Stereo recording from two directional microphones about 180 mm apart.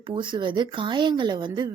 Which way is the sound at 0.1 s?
25° right (ahead or behind).